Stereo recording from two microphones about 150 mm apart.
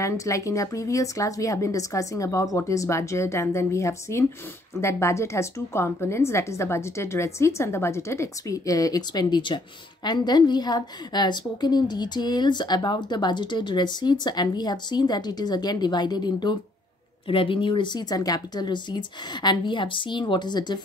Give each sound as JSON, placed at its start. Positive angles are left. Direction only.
{"t": 0.0, "sound": "a woman's voice", "side_deg": 20}